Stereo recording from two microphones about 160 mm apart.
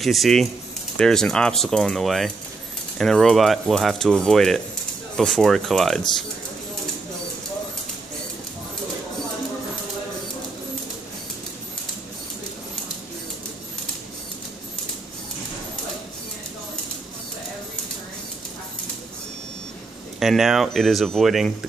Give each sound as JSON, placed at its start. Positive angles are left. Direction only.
{"t": 0.0, "sound": "speech", "side_deg": 0}
{"t": 20.2, "sound": "speech", "side_deg": 0}